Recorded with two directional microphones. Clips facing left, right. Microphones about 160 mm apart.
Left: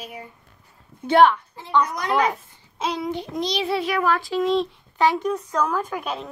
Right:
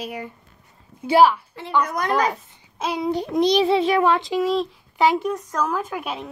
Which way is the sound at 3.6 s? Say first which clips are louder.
Right 5 dB; 25° right (ahead or behind).